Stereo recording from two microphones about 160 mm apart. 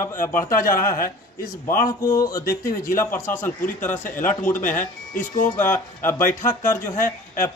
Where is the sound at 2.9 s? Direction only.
15° left (ahead or behind).